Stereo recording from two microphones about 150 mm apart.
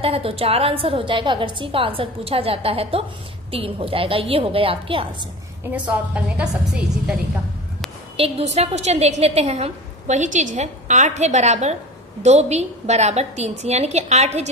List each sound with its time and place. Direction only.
0.0 s a woman's voice: 40° right (ahead or behind)
5.7 s a woman's voice: 10° right (ahead or behind)
8.2 s a woman's voice: 45° right (ahead or behind)